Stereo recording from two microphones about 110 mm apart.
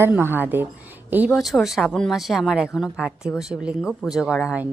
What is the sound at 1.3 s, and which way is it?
A woman's voice, centre (ahead or behind).